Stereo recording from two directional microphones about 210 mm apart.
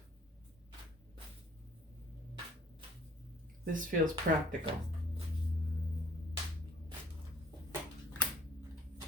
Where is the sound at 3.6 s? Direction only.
40° right (ahead or behind).